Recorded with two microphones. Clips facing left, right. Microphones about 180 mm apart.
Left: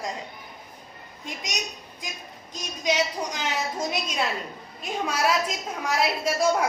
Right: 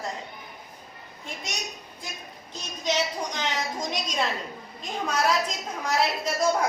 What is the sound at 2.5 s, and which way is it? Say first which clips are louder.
A woman's voice: left 2 dB; 10° left (ahead or behind).